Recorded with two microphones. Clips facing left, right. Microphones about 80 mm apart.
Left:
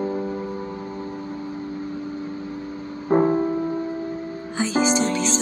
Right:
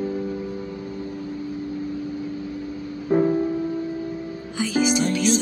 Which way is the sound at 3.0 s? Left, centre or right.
Left.